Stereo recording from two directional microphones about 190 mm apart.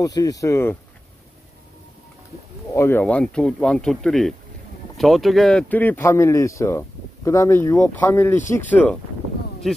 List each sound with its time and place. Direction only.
0.0 s speech: 20° left (ahead or behind)
2.7 s speech: 10° left (ahead or behind)